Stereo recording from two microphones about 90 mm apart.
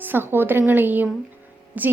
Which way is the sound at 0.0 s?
25° right (ahead or behind).